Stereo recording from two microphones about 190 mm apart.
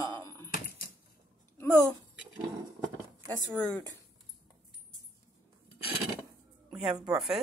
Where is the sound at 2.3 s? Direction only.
20° right (ahead or behind).